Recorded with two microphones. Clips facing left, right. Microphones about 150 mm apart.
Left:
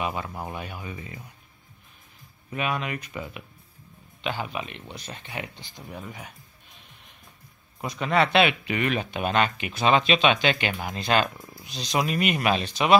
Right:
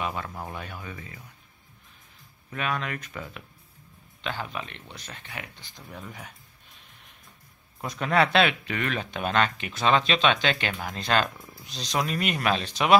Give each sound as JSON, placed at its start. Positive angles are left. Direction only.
{"t": 0.0, "sound": "speech", "side_deg": 10}
{"t": 2.5, "sound": "speech", "side_deg": 10}
{"t": 5.8, "sound": "speech", "side_deg": 10}
{"t": 7.8, "sound": "speech", "side_deg": 0}